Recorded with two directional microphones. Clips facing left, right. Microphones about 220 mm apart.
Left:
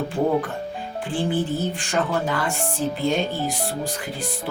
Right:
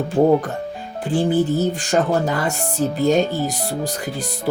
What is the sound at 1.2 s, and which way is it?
Speech, 40° right (ahead or behind).